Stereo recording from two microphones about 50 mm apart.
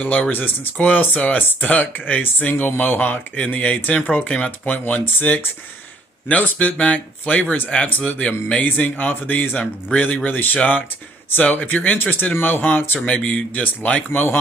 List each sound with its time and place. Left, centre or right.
0.0 s speech: left
3.3 s speech: left
8.6 s speech: left
13.0 s speech: left